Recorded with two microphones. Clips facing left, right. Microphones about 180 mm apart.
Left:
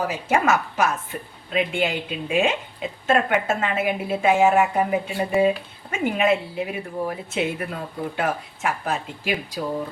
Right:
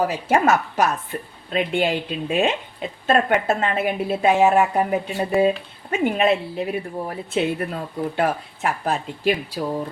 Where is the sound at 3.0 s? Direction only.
35° right (ahead or behind).